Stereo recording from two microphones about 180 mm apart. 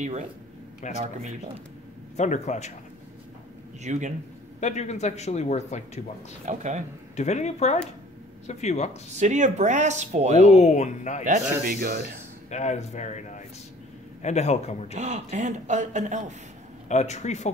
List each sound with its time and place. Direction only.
0.8 s speech: 40° left (ahead or behind)
2.1 s speech: 40° left (ahead or behind)
3.8 s speech: 40° right (ahead or behind)
4.6 s speech: 40° left (ahead or behind)
6.4 s speech: 40° right (ahead or behind)
7.2 s speech: 40° left (ahead or behind)
9.1 s speech: 40° right (ahead or behind)
10.4 s speech: 40° left (ahead or behind)
11.6 s speech: 55° right (ahead or behind)
12.4 s speech: 40° left (ahead or behind)
15.0 s speech: 40° right (ahead or behind)
16.9 s speech: 40° left (ahead or behind)